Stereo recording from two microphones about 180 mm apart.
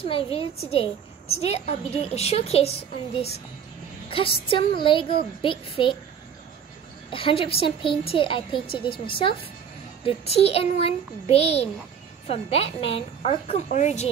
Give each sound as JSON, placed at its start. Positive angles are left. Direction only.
{"t": 0.0, "sound": "a woman's voice", "side_deg": 30}
{"t": 4.1, "sound": "a woman's voice", "side_deg": 30}
{"t": 7.1, "sound": "a woman's voice", "side_deg": 30}